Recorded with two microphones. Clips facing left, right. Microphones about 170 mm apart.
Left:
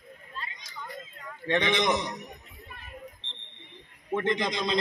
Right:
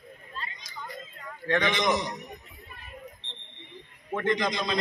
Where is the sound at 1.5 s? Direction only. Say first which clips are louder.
Even; 20° left (ahead or behind).